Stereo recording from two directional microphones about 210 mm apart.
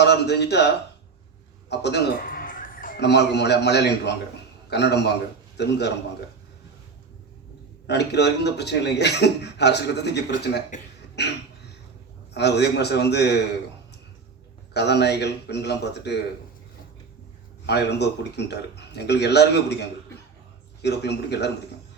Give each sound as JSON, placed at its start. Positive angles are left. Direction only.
{"t": 0.0, "sound": "a man's voice", "side_deg": 55}
{"t": 1.7, "sound": "a man's voice", "side_deg": 55}
{"t": 7.9, "sound": "a man's voice", "side_deg": 55}
{"t": 14.7, "sound": "a man's voice", "side_deg": 55}
{"t": 17.7, "sound": "a man's voice", "side_deg": 55}
{"t": 20.8, "sound": "a man's voice", "side_deg": 55}